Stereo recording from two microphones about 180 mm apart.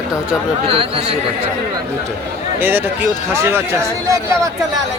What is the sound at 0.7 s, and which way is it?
Speech, 30° right (ahead or behind).